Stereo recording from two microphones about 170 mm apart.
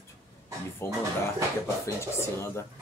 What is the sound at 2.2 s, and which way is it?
Speech, 15° left (ahead or behind).